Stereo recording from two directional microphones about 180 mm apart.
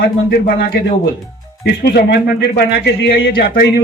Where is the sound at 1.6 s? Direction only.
70° left (ahead or behind).